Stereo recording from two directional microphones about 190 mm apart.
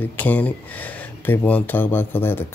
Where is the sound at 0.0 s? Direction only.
10° left (ahead or behind).